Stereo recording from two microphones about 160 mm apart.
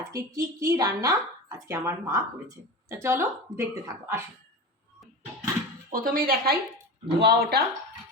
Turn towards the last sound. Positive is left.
turn(degrees=-90)